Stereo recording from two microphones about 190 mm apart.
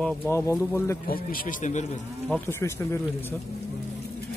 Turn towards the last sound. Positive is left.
turn(degrees=10)  # may be behind; listen again after turning